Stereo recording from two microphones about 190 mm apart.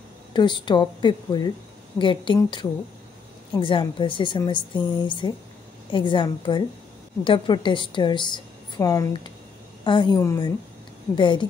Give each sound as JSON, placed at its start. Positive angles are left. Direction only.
{"t": 0.3, "sound": "a woman's voice", "side_deg": 25}